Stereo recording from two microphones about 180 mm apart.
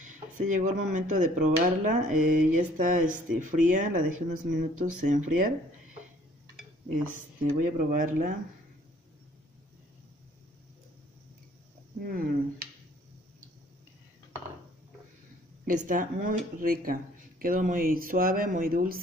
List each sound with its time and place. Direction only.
0.0 s a sound: 45° right (ahead or behind)
0.9 s speech: 45° right (ahead or behind)
7.4 s speech: 45° right (ahead or behind)
12.0 s speech: 55° right (ahead or behind)
15.6 s speech: 50° right (ahead or behind)